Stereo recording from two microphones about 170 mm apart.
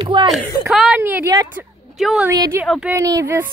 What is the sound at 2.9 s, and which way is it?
Speech, 15° right (ahead or behind).